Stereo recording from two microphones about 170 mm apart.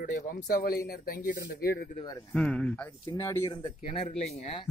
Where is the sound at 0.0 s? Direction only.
50° left (ahead or behind).